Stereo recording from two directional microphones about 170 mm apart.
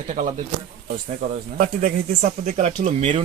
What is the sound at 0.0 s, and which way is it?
Speech, 50° right (ahead or behind).